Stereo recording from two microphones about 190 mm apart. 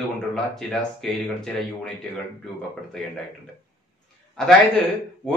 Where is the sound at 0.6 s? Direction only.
Centre (ahead or behind).